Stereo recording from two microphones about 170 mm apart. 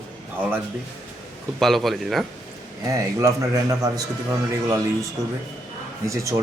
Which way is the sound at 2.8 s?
20° right (ahead or behind).